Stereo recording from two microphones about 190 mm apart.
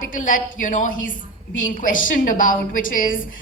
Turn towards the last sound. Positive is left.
turn(degrees=45)  # may be behind; listen again after turning